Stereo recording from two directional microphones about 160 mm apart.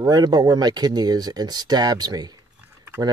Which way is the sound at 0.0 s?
25° right (ahead or behind).